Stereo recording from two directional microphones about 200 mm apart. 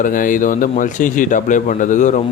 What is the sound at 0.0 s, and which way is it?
A man's voice, 40° left (ahead or behind).